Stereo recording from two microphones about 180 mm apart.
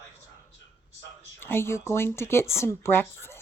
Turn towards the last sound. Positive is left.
turn(degrees=10)  # may be behind; listen again after turning